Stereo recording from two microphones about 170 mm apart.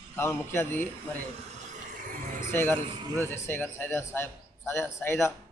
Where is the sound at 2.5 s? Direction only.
15° left (ahead or behind).